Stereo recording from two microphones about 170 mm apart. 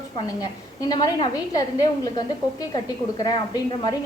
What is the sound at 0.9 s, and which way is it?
A woman's voice, 25° left (ahead or behind).